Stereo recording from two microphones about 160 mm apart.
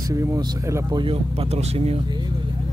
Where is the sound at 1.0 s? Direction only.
35° right (ahead or behind).